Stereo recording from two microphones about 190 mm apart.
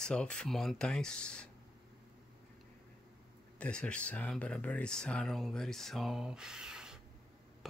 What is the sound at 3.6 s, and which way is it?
Speech, 5° left (ahead or behind).